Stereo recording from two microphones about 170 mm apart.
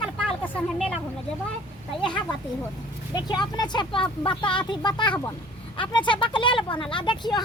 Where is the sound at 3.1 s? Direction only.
25° left (ahead or behind).